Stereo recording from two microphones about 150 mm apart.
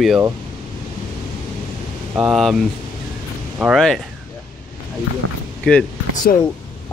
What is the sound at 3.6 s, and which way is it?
Speech, centre (ahead or behind).